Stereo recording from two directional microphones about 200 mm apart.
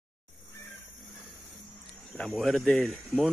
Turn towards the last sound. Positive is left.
turn(degrees=0)  # may be behind; listen again after turning